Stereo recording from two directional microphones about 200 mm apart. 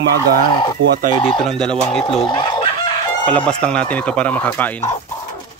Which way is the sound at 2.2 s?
25° left (ahead or behind).